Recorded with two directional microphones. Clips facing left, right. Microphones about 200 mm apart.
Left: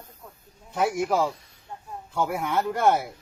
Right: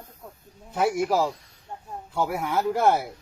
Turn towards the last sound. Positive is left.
turn(degrees=0)  # may be behind; listen again after turning